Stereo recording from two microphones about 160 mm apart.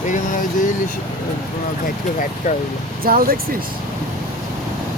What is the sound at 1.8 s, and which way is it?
Speech, 60° left (ahead or behind).